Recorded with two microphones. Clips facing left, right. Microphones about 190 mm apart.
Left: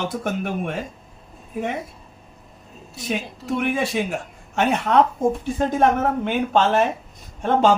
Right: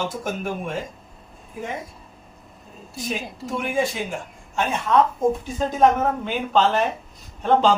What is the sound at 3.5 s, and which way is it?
A man's voice, 65° left (ahead or behind).